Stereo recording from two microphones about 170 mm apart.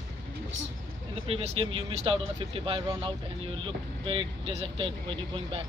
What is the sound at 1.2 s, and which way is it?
Speech, 30° right (ahead or behind).